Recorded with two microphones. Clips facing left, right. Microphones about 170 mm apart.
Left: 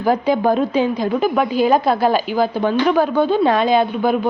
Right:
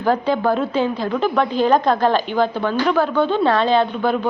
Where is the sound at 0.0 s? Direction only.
10° left (ahead or behind).